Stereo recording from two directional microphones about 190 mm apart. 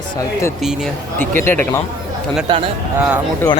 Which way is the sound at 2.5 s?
20° right (ahead or behind).